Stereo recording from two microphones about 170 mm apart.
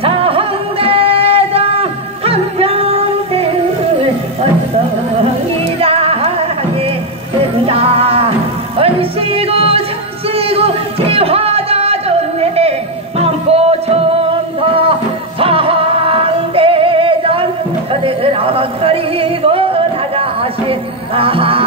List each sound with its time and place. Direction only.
0.0 s music: 35° right (ahead or behind)
5.8 s music: 35° right (ahead or behind)
7.6 s music: 35° right (ahead or behind)
18.0 s a sound: 35° right (ahead or behind)